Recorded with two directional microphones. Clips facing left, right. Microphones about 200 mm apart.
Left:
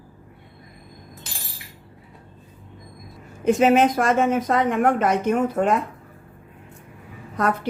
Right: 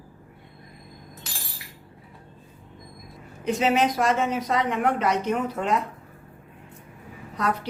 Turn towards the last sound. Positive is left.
turn(degrees=50)  # may be behind; listen again after turning